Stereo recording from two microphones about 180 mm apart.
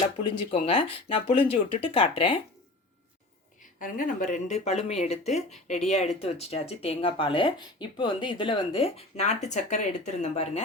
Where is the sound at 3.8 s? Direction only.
50° left (ahead or behind).